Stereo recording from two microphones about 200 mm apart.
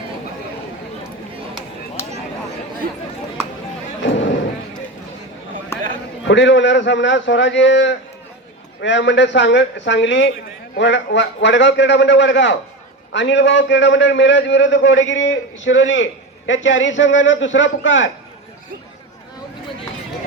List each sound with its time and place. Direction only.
4.0 s thump: 65° left (ahead or behind)
5.7 s a sound: 15° left (ahead or behind)
6.2 s a man's voice: 65° left (ahead or behind)